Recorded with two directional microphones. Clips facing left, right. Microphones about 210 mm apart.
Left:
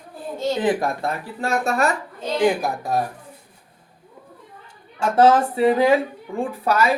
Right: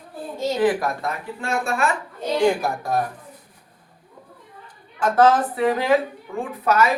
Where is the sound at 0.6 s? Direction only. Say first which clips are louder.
Right 3 dB; 25° left (ahead or behind).